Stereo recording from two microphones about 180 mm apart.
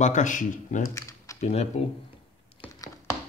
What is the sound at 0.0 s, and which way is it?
Speech, 45° left (ahead or behind).